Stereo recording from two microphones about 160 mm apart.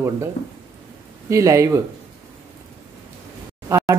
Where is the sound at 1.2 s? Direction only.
20° right (ahead or behind).